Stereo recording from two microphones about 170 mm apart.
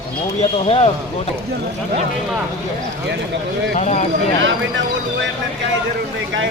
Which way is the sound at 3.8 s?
40° left (ahead or behind).